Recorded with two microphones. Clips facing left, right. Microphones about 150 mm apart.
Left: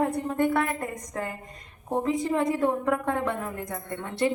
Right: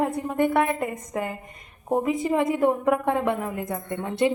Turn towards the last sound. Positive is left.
turn(degrees=-15)  # may be behind; listen again after turning